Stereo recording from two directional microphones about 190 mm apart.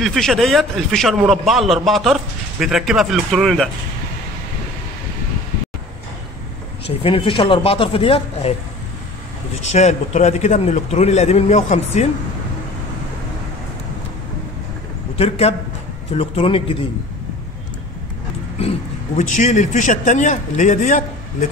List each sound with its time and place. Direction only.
0.0 s a man's voice: centre (ahead or behind)
7.0 s speech: 30° left (ahead or behind)
9.7 s a man's voice: 35° left (ahead or behind)
15.1 s a man's voice: 30° left (ahead or behind)
19.1 s a man's voice: 40° left (ahead or behind)